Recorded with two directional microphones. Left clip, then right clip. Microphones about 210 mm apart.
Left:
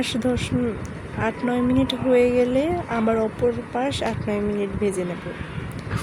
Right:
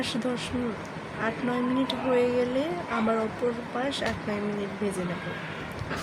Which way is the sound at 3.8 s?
35° left (ahead or behind).